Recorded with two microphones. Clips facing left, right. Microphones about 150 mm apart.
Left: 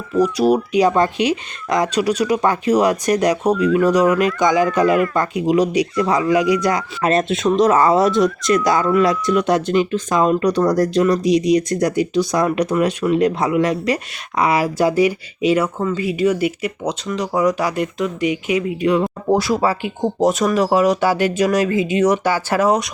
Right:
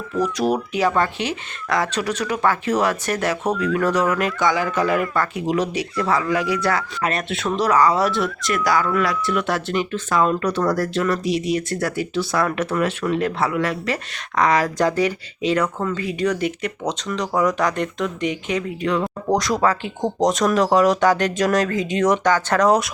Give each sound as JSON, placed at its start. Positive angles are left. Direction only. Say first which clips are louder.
{"t": 0.1, "sound": "speech", "louder": "left 6 dB", "side_deg": 10}